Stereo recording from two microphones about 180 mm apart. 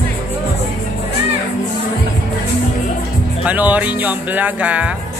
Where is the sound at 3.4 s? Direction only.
10° right (ahead or behind).